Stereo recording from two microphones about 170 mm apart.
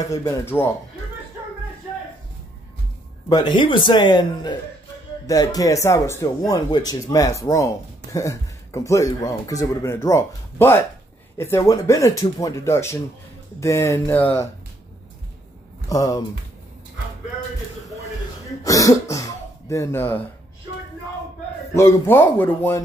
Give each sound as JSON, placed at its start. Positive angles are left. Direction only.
{"t": 0.0, "sound": "speech", "side_deg": 15}
{"t": 3.3, "sound": "speech", "side_deg": 25}
{"t": 15.9, "sound": "speech", "side_deg": 20}
{"t": 18.6, "sound": "speech", "side_deg": 20}
{"t": 21.7, "sound": "speech", "side_deg": 15}